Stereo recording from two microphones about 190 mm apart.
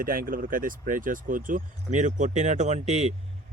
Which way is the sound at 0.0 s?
50° right (ahead or behind).